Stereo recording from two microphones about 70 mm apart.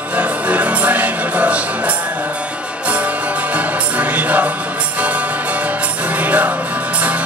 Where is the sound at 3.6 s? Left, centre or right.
Right.